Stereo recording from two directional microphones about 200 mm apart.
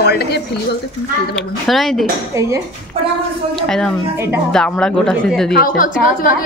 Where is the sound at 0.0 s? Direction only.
55° left (ahead or behind).